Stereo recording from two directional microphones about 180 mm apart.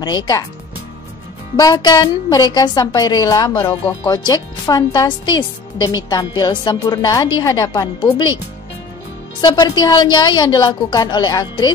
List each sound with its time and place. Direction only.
0.0 s a woman's voice: 20° left (ahead or behind)
1.6 s a woman's voice: 20° left (ahead or behind)
9.4 s a woman's voice: 25° left (ahead or behind)